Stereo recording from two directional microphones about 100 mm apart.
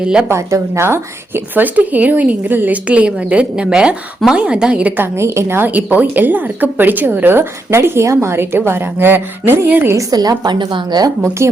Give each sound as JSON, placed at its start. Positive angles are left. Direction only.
{"t": 0.0, "sound": "speech", "side_deg": -10}
{"t": 0.3, "sound": "speech", "side_deg": -30}
{"t": 5.1, "sound": "speech", "side_deg": -25}
{"t": 9.9, "sound": "a woman's voice", "side_deg": -40}